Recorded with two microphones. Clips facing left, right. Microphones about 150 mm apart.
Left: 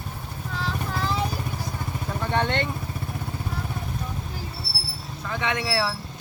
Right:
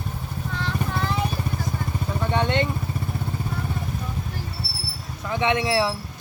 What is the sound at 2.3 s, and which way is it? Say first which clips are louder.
Vehicle: right 2 dB; 15° right (ahead or behind).